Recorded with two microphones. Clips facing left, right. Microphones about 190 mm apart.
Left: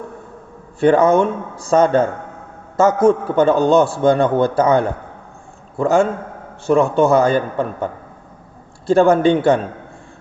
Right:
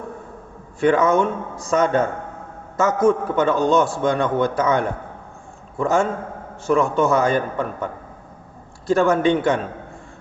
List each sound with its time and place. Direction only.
0.8 s a man's voice: 30° left (ahead or behind)
8.9 s a man's voice: 30° left (ahead or behind)